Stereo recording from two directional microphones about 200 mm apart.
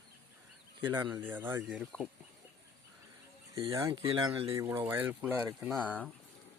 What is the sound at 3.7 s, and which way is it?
Speech, 15° right (ahead or behind).